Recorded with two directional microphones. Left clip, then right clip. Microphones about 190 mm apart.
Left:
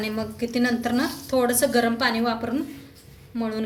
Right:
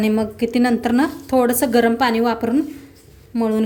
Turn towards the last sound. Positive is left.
turn(degrees=-45)  # may be behind; listen again after turning